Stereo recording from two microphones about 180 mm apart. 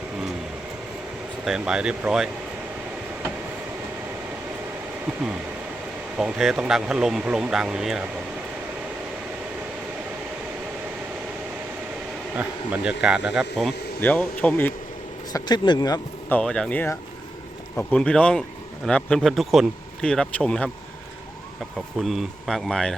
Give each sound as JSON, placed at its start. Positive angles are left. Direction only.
{"t": 1.5, "sound": "speech", "side_deg": -5}
{"t": 6.1, "sound": "speech", "side_deg": -5}
{"t": 12.4, "sound": "speech", "side_deg": -5}
{"t": 15.3, "sound": "speech", "side_deg": 20}
{"t": 16.3, "sound": "speech", "side_deg": 5}
{"t": 22.0, "sound": "speech", "side_deg": 0}